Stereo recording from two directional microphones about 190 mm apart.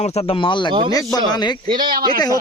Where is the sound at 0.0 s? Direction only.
35° left (ahead or behind).